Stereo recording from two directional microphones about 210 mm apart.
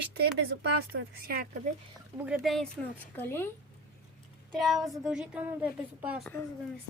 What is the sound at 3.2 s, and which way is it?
Speech, 10° left (ahead or behind).